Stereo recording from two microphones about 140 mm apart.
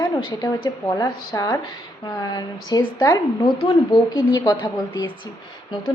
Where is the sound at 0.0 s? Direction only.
30° left (ahead or behind).